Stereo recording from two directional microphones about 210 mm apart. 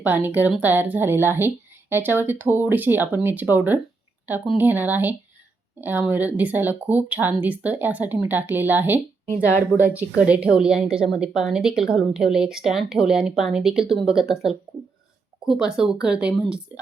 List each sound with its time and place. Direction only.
0.0 s speech: 10° right (ahead or behind)